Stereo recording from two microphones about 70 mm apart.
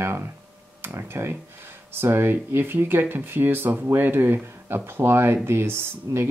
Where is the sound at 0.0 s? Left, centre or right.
Right.